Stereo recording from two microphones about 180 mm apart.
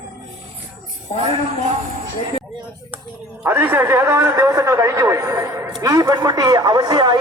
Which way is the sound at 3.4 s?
10° right (ahead or behind).